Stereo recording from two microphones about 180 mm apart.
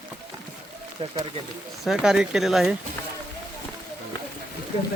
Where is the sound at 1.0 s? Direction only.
30° right (ahead or behind).